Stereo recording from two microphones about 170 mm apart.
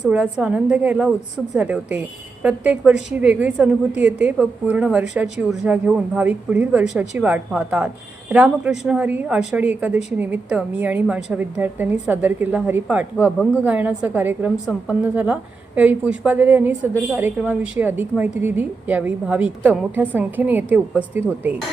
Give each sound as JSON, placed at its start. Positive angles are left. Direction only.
{"t": 0.1, "sound": "a woman's voice", "side_deg": -5}